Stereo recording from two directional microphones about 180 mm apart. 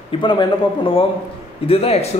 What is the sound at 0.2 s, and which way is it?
A man's voice, 25° left (ahead or behind).